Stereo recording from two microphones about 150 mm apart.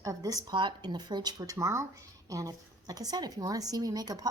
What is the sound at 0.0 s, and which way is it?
A woman's voice, 25° right (ahead or behind).